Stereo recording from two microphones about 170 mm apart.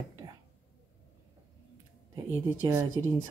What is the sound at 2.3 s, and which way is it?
Speech, 10° right (ahead or behind).